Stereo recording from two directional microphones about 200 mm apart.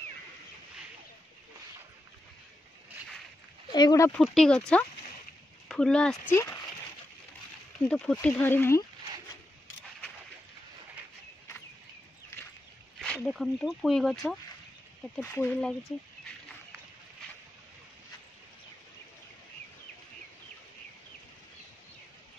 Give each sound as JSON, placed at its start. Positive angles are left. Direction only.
{"t": 3.7, "sound": "speech", "side_deg": 20}
{"t": 4.1, "sound": "speech", "side_deg": 5}
{"t": 7.9, "sound": "speech", "side_deg": 5}
{"t": 13.0, "sound": "speech", "side_deg": 5}
{"t": 15.1, "sound": "speech", "side_deg": 10}